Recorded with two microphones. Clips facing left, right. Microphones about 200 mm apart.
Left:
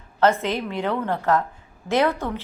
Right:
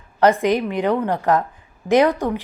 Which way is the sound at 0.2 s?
15° right (ahead or behind).